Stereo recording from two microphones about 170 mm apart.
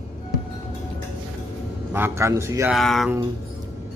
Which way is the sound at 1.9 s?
15° right (ahead or behind).